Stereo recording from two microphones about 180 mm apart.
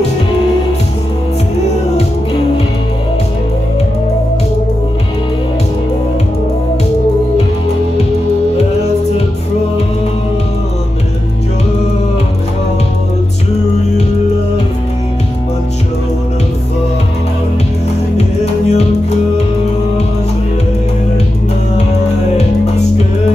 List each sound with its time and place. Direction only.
18.1 s music: 35° left (ahead or behind)